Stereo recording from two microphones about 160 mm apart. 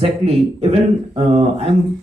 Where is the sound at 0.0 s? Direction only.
40° right (ahead or behind).